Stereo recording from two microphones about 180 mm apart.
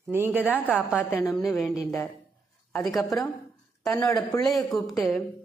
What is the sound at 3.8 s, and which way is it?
Speech, 15° left (ahead or behind).